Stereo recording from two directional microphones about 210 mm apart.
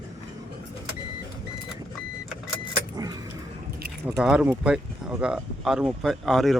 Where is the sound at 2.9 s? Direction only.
20° right (ahead or behind).